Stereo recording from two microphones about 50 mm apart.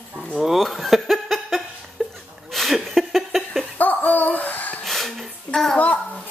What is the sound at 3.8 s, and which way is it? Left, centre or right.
Laughter, left.